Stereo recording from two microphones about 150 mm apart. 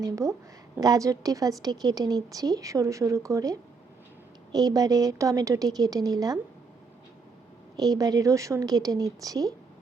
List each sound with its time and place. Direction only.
0.0 s a woman's voice: 20° right (ahead or behind)
7.8 s a woman's voice: 25° right (ahead or behind)